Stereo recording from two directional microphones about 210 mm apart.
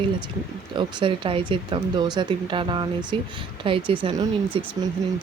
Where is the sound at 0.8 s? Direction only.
25° right (ahead or behind).